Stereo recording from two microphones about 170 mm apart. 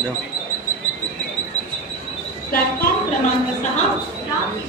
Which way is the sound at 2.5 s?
55° left (ahead or behind).